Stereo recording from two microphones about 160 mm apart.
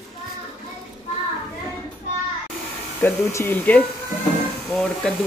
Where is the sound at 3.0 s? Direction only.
15° left (ahead or behind).